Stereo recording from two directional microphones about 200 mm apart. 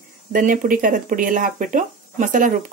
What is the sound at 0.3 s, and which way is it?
Speech, 40° right (ahead or behind).